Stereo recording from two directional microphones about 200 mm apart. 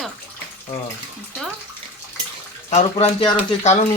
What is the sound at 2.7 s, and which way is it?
Speech, 35° left (ahead or behind).